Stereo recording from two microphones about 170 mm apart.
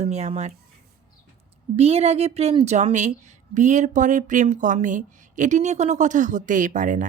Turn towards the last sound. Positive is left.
turn(degrees=-50)  # may be behind; listen again after turning